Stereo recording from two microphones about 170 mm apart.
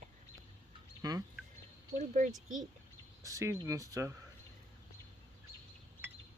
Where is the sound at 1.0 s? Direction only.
20° right (ahead or behind).